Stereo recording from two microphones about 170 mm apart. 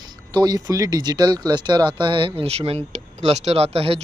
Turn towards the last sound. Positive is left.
turn(degrees=-35)  # may be behind; listen again after turning